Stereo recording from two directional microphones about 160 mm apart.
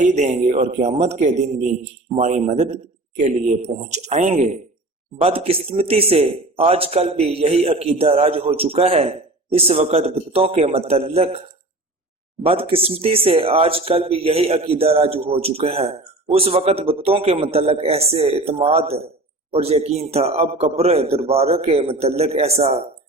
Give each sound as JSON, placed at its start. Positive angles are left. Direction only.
{"t": 0.0, "sound": "speech", "side_deg": -50}
{"t": 3.9, "sound": "a man's voice", "side_deg": -45}
{"t": 12.5, "sound": "a man's voice", "side_deg": -35}